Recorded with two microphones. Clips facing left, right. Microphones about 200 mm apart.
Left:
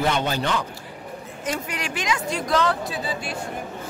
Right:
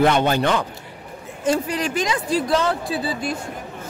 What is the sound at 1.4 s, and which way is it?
Speech, 30° right (ahead or behind).